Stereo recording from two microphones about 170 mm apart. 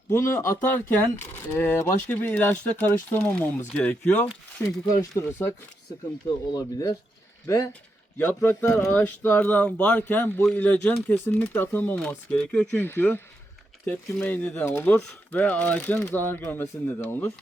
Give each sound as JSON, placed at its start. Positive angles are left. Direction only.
{"t": 0.1, "sound": "speech", "side_deg": 15}